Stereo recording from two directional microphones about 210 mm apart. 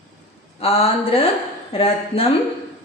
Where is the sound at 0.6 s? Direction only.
25° left (ahead or behind).